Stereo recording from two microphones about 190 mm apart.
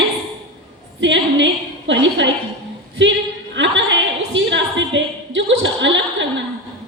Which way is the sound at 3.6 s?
75° right (ahead or behind).